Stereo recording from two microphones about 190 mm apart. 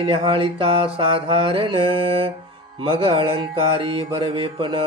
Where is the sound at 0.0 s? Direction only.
30° right (ahead or behind).